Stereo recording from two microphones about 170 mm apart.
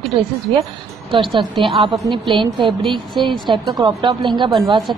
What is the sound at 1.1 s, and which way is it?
Speech, 30° right (ahead or behind).